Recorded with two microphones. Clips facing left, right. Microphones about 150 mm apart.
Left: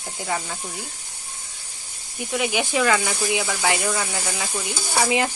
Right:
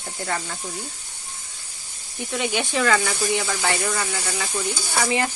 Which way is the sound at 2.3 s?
5° left (ahead or behind).